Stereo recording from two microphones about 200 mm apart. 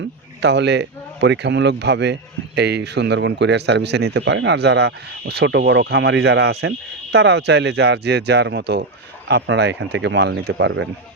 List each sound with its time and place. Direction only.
0.4 s speech: 60° right (ahead or behind)